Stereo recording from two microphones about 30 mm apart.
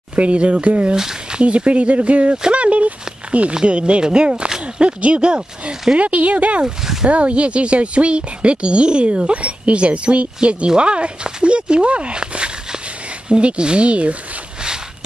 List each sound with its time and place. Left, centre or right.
0.1 s speech: right
2.5 s a sound: right
3.6 s speech: right
5.9 s speech: right